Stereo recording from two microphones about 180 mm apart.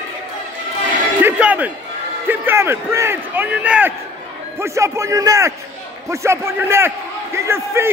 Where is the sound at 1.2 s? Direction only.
10° right (ahead or behind).